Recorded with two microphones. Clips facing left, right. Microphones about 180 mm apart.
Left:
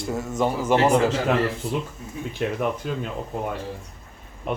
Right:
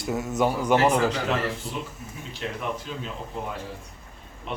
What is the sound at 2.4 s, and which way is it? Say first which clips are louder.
Speech: left 7 dB; 55° left (ahead or behind).